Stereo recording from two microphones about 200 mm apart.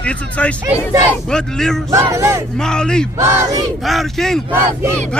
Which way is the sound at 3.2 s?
15° right (ahead or behind).